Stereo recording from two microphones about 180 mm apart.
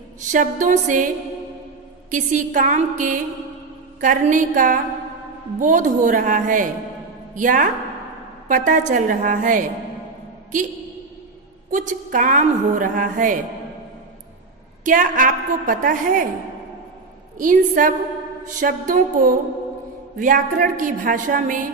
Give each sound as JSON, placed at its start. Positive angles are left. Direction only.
{"t": 0.3, "sound": "a woman's voice", "side_deg": -45}
{"t": 2.0, "sound": "a woman's voice", "side_deg": -45}
{"t": 11.7, "sound": "a woman's voice", "side_deg": -45}
{"t": 14.9, "sound": "a woman's voice", "side_deg": -45}
{"t": 17.4, "sound": "a woman's voice", "side_deg": -50}